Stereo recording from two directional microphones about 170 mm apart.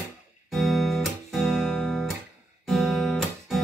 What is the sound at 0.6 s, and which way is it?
Music, centre (ahead or behind).